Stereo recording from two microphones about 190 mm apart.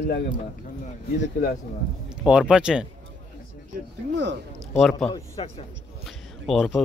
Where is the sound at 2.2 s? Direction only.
5° right (ahead or behind).